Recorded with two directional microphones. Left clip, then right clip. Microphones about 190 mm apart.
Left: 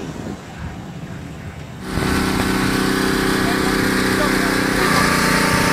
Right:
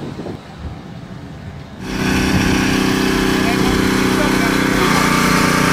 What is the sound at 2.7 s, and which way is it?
Vehicle, 25° right (ahead or behind).